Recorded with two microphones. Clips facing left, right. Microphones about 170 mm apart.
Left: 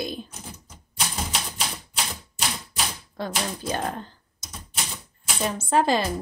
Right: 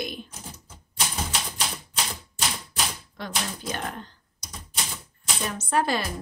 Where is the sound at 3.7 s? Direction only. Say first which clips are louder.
Left 5 dB; 30° left (ahead or behind).